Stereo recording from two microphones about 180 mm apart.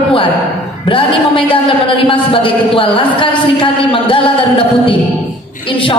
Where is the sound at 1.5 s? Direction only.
30° left (ahead or behind).